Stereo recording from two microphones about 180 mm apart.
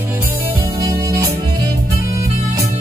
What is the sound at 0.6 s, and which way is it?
Music, 15° right (ahead or behind).